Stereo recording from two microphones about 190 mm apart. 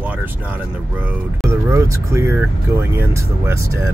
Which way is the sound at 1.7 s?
15° right (ahead or behind).